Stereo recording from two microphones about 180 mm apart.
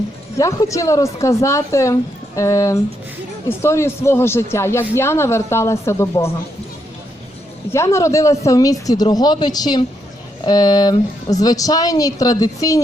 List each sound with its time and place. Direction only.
0.3 s speech: 15° left (ahead or behind)
7.7 s a woman's voice: 15° left (ahead or behind)